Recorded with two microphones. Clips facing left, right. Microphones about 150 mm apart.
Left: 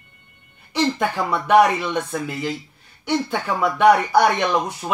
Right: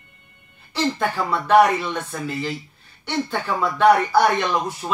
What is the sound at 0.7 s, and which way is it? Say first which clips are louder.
Speech: left 2 dB; 15° left (ahead or behind).